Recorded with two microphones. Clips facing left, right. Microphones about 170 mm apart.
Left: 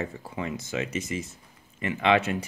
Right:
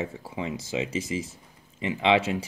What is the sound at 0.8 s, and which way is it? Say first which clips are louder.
Speech: right 2 dB; 90° right.